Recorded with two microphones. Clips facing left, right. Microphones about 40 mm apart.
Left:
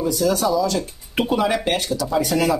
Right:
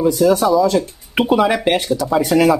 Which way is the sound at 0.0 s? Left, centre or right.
Right.